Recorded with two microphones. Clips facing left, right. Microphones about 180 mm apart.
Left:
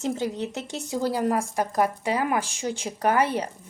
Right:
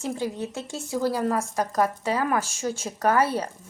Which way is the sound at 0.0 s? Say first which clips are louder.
Left 2 dB; 20° left (ahead or behind).